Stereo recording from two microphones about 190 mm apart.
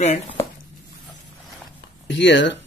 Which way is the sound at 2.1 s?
70° left (ahead or behind).